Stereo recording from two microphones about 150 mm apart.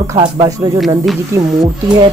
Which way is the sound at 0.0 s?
20° right (ahead or behind).